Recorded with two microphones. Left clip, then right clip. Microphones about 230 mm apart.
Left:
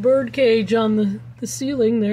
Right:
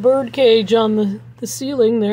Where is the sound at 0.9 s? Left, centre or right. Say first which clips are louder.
Right 3 dB; centre.